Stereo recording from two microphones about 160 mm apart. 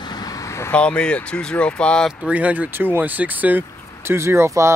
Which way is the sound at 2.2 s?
10° right (ahead or behind).